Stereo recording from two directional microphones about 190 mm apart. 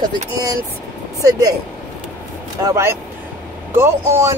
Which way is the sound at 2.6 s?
15° right (ahead or behind).